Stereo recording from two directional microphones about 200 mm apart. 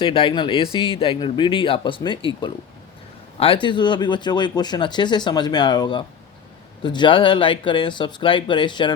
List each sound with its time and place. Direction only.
0.0 s speech: 25° left (ahead or behind)